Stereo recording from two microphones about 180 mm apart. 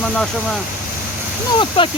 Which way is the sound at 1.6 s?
30° left (ahead or behind).